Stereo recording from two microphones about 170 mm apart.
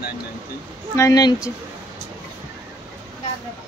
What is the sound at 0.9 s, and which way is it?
Speech, 20° left (ahead or behind).